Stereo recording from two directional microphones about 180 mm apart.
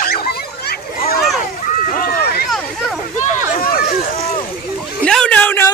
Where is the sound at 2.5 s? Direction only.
Centre (ahead or behind).